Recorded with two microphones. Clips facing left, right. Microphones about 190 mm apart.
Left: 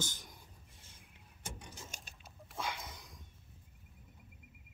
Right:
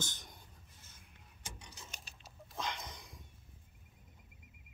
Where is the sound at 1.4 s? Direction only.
50° left (ahead or behind).